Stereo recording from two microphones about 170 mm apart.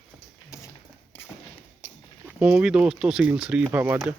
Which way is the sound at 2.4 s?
5° right (ahead or behind).